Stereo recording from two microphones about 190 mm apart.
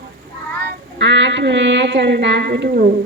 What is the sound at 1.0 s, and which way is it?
A woman's voice, 70° right (ahead or behind).